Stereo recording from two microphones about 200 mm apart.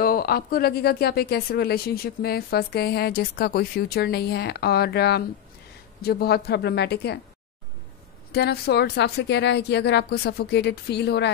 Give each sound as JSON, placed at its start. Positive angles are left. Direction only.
{"t": 0.0, "sound": "speech", "side_deg": 50}
{"t": 8.3, "sound": "a woman's voice", "side_deg": 55}